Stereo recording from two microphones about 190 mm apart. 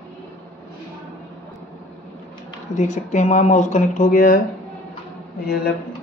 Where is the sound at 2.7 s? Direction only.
40° left (ahead or behind).